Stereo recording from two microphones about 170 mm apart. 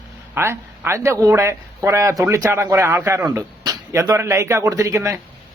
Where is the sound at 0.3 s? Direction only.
15° right (ahead or behind).